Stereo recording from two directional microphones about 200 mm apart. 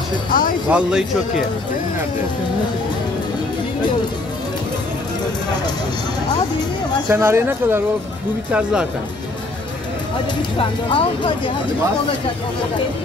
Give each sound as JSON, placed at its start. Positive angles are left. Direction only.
{"t": 0.3, "sound": "speech", "side_deg": 45}
{"t": 0.7, "sound": "speech", "side_deg": -5}
{"t": 7.1, "sound": "speech", "side_deg": -10}
{"t": 10.6, "sound": "speech", "side_deg": 25}